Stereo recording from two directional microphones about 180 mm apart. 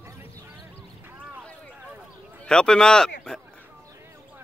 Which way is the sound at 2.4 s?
5° left (ahead or behind).